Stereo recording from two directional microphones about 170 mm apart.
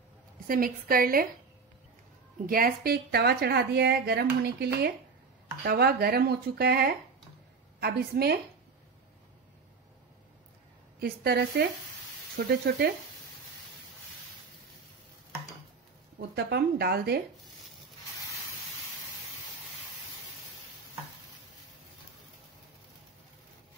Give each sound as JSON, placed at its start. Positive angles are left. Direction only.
{"t": 0.5, "sound": "speech", "side_deg": -60}
{"t": 2.4, "sound": "a woman's voice", "side_deg": -60}
{"t": 11.0, "sound": "a woman's voice", "side_deg": -65}
{"t": 16.2, "sound": "a woman's voice", "side_deg": -70}